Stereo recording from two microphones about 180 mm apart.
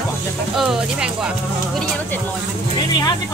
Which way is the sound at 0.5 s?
5° right (ahead or behind).